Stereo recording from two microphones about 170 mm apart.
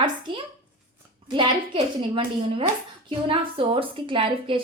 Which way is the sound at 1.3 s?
30° right (ahead or behind).